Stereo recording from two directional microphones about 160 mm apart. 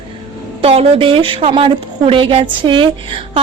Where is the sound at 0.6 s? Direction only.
40° right (ahead or behind).